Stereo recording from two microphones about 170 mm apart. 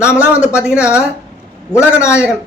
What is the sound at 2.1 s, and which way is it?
Speech, 5° right (ahead or behind).